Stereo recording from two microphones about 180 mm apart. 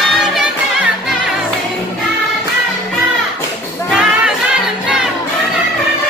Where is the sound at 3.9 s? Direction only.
5° right (ahead or behind).